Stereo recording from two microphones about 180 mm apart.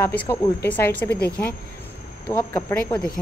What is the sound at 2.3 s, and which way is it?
Speech, 15° left (ahead or behind).